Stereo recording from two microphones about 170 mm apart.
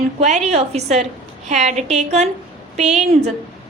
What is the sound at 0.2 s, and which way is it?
A woman's voice, 40° right (ahead or behind).